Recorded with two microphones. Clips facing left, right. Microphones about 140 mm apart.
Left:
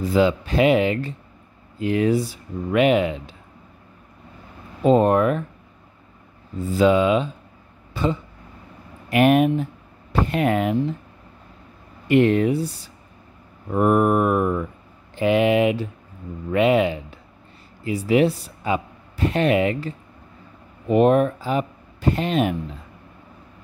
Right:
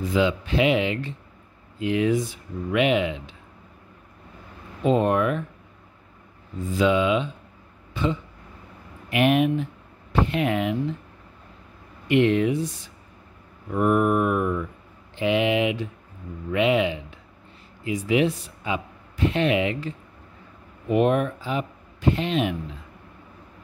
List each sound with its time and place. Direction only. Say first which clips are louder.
0.0 s speech: left 4 dB; 40° left (ahead or behind)
4.8 s speech: left 4 dB; 40° left (ahead or behind)
6.6 s speech: left 4 dB; 35° left (ahead or behind)
12.1 s speech: left 3 dB; 40° left (ahead or behind)
20.9 s speech: left 4 dB; 35° left (ahead or behind)